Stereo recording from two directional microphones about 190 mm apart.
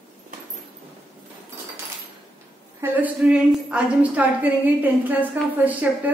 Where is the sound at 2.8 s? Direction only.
5° right (ahead or behind).